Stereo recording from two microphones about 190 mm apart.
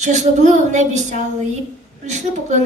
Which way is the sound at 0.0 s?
40° right (ahead or behind).